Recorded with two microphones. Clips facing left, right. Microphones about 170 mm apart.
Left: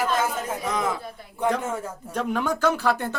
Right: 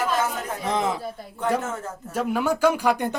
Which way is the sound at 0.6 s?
25° right (ahead or behind).